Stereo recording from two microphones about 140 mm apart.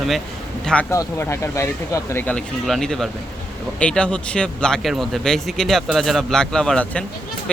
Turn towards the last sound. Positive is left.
turn(degrees=5)  # may be behind; listen again after turning